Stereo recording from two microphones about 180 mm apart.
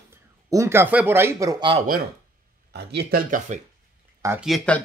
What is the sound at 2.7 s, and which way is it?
Speech, 60° right (ahead or behind).